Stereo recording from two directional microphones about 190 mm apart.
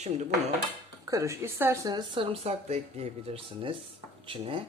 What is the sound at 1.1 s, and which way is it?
Speech, 15° right (ahead or behind).